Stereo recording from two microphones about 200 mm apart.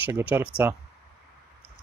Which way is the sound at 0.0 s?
10° right (ahead or behind).